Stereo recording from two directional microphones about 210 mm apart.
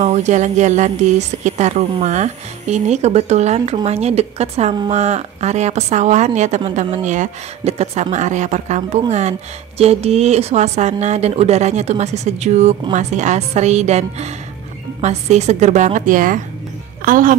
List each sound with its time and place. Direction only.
0.0 s speech: 35° right (ahead or behind)